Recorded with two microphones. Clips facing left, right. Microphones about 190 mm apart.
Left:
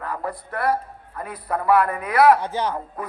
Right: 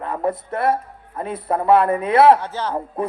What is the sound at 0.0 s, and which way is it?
A man's voice, 25° right (ahead or behind).